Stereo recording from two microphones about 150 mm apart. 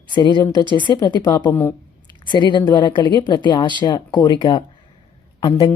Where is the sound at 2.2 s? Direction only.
30° left (ahead or behind).